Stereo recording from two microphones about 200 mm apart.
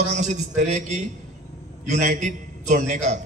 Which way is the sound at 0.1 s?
35° right (ahead or behind).